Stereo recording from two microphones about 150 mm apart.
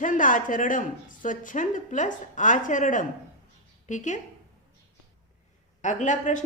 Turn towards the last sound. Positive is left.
turn(degrees=55)  # may be behind; listen again after turning